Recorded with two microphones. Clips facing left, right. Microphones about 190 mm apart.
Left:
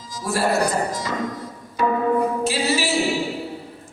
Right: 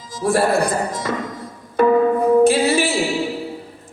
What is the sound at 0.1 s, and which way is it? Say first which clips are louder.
Music: right 5 dB; 55° right (ahead or behind).